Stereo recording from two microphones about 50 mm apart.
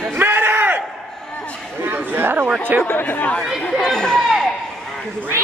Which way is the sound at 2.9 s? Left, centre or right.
Left.